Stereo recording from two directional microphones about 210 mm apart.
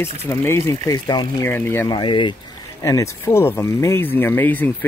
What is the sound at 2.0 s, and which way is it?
Speech, 20° left (ahead or behind).